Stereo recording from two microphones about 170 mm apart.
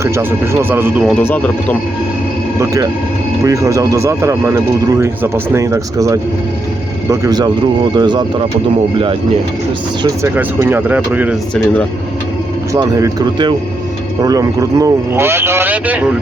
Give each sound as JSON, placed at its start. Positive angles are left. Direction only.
{"t": 0.0, "sound": "speech", "side_deg": -15}
{"t": 1.2, "sound": "speech", "side_deg": 10}
{"t": 3.4, "sound": "speech", "side_deg": -20}
{"t": 10.3, "sound": "speech", "side_deg": -10}
{"t": 12.7, "sound": "speech", "side_deg": -20}